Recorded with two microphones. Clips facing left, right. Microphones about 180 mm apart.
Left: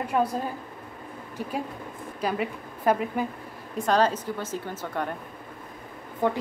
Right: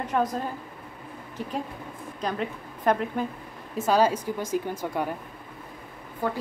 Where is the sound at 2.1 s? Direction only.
5° left (ahead or behind).